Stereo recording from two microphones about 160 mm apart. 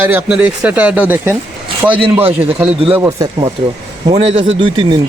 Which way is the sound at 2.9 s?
15° right (ahead or behind).